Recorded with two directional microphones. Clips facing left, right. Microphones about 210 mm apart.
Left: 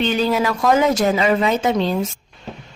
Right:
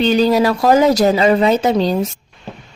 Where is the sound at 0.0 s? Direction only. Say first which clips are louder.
Right 5 dB; 35° right (ahead or behind).